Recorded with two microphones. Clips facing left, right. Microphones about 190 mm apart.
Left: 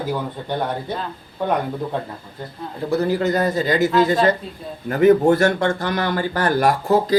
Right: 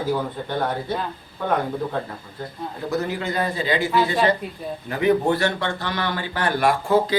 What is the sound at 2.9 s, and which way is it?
A man's voice, 35° left (ahead or behind).